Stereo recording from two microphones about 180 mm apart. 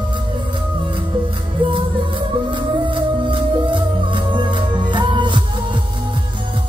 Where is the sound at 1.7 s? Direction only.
30° right (ahead or behind).